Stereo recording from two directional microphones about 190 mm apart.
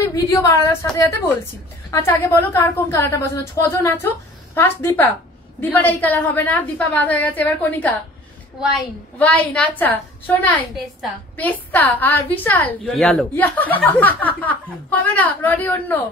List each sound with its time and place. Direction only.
0.1 s a woman's voice: 20° left (ahead or behind)
1.9 s a woman's voice: 15° left (ahead or behind)
9.2 s a woman's voice: 10° left (ahead or behind)